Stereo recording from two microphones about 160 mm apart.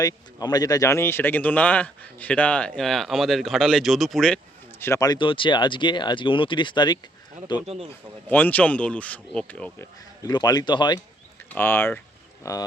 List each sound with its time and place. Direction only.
0.0 s speech: 25° left (ahead or behind); by 4.4 s centre (ahead or behind)
4.8 s speech: 20° left (ahead or behind)
7.9 s speech: 10° left (ahead or behind)
10.2 s speech: 25° left (ahead or behind)
11.5 s speech: 15° left (ahead or behind)